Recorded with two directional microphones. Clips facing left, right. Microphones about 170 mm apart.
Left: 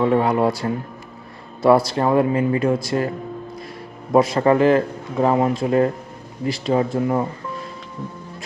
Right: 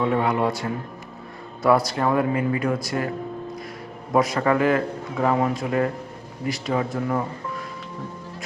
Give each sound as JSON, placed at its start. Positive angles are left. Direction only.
{"t": 0.2, "sound": "a man's voice", "side_deg": 35}
{"t": 4.1, "sound": "a man's voice", "side_deg": 30}